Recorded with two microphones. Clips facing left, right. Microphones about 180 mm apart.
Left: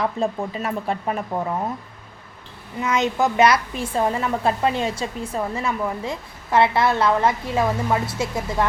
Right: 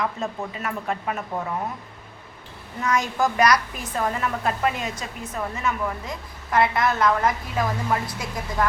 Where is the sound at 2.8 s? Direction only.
20° left (ahead or behind).